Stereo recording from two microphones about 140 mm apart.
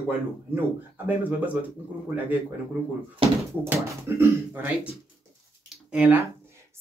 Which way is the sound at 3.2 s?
40° right (ahead or behind).